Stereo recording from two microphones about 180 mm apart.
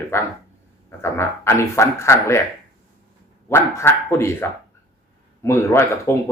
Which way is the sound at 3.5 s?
15° left (ahead or behind).